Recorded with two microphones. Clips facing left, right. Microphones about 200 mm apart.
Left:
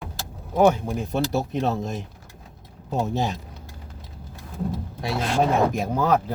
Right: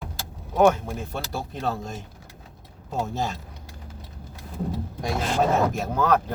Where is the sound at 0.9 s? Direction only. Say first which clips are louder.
Left 7 dB; 20° left (ahead or behind).